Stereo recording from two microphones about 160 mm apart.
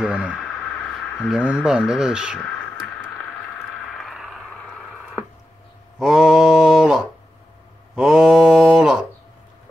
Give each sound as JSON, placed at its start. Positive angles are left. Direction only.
{"t": 0.0, "sound": "speech", "side_deg": -5}
{"t": 3.8, "sound": "a sound", "side_deg": 0}
{"t": 5.9, "sound": "mantra", "side_deg": -5}